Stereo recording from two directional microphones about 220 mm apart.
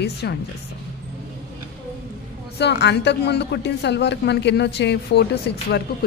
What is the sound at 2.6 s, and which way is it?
Speech, 50° left (ahead or behind).